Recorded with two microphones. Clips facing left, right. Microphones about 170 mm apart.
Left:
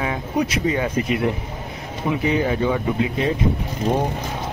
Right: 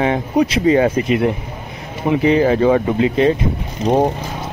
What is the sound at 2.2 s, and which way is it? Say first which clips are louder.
Speech: right 8 dB; 90° right.